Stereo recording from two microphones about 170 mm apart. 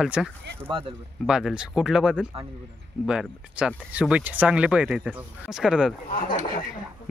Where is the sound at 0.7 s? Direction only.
30° right (ahead or behind).